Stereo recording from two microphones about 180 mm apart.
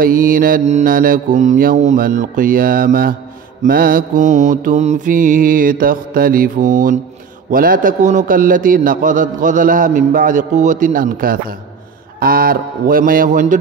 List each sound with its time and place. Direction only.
0.0 s a man's voice: 50° right (ahead or behind)